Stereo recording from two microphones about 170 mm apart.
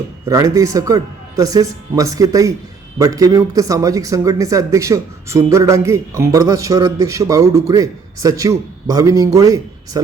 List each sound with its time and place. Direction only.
0.3 s a man's voice: 20° right (ahead or behind)